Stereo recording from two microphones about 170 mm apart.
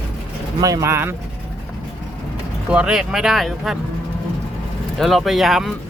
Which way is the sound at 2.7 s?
5° right (ahead or behind).